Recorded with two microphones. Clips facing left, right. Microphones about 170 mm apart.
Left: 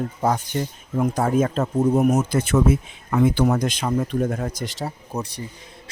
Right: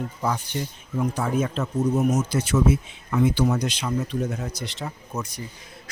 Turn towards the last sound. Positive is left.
turn(degrees=35)  # may be behind; listen again after turning